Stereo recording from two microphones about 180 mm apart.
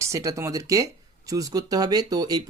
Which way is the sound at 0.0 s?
15° right (ahead or behind).